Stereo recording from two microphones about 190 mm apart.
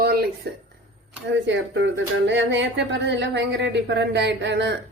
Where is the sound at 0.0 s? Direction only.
55° right (ahead or behind).